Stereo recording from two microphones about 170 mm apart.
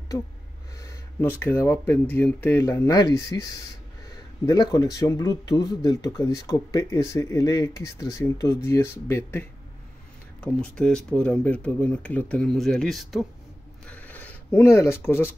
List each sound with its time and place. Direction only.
0.7 s speech: 15° left (ahead or behind)